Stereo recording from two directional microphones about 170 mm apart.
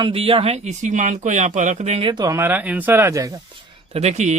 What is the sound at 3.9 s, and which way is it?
Speech, 40° right (ahead or behind).